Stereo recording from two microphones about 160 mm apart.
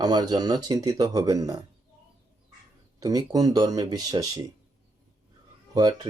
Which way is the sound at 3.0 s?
20° right (ahead or behind).